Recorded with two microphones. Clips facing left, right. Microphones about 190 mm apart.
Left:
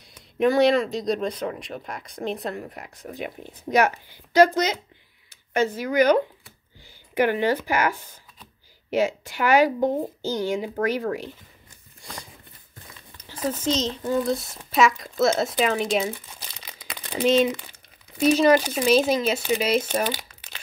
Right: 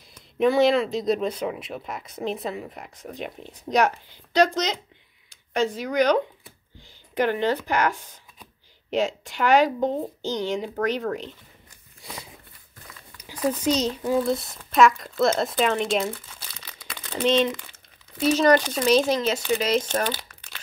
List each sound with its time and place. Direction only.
0.1 s speech: centre (ahead or behind)
12.0 s a sound: 5° right (ahead or behind)
13.5 s speech: 15° right (ahead or behind)
14.7 s speech: centre (ahead or behind)
16.3 s crumpling: 15° left (ahead or behind)
18.2 s speech: 10° left (ahead or behind)
20.2 s crumpling: 20° left (ahead or behind)